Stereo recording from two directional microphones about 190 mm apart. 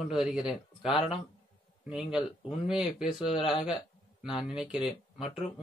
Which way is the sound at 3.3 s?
25° left (ahead or behind).